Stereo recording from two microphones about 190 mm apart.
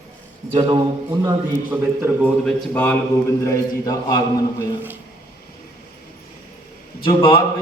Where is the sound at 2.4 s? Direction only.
5° left (ahead or behind).